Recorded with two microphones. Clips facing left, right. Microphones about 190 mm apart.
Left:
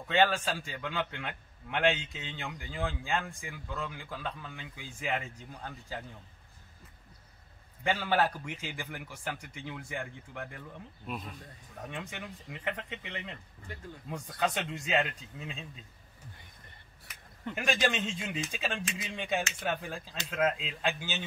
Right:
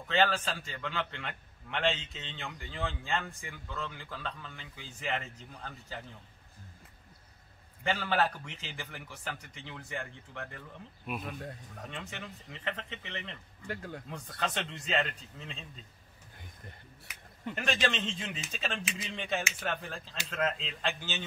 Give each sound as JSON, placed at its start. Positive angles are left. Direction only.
{"t": 0.1, "sound": "a man's voice", "side_deg": 10}
{"t": 7.8, "sound": "a man's voice", "side_deg": 10}
{"t": 11.9, "sound": "a man's voice", "side_deg": 15}
{"t": 13.7, "sound": "speech", "side_deg": -70}
{"t": 14.1, "sound": "a man's voice", "side_deg": 10}
{"t": 17.6, "sound": "a man's voice", "side_deg": 10}